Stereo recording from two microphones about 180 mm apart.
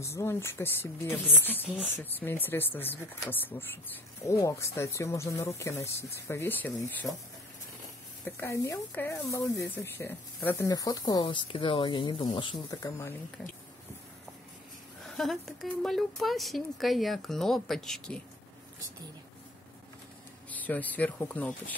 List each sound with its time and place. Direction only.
0.0 s speech: 15° left (ahead or behind)
8.4 s speech: 15° left (ahead or behind)
15.1 s speech: centre (ahead or behind)
20.4 s speech: 10° left (ahead or behind)